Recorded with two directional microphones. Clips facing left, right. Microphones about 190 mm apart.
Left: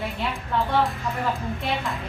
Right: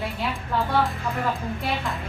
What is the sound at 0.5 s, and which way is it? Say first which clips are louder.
A woman's voice: left 1 dB; 5° right (ahead or behind).